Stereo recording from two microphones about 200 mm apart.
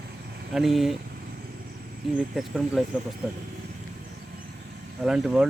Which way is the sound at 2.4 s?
Centre (ahead or behind).